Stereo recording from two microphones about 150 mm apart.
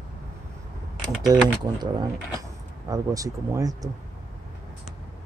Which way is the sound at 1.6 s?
30° right (ahead or behind).